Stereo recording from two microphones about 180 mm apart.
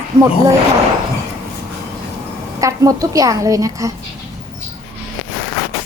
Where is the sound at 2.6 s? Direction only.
15° right (ahead or behind).